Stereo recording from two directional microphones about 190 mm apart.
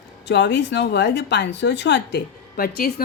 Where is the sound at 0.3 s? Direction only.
65° left (ahead or behind).